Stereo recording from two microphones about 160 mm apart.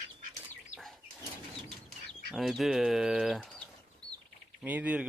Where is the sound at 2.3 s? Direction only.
Centre (ahead or behind).